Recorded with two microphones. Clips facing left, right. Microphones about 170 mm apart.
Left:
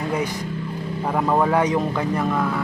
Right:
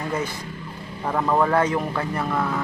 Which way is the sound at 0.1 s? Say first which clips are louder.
Left 3 dB; 15° left (ahead or behind).